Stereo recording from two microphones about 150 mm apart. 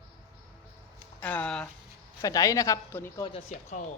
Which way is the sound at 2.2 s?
25° left (ahead or behind).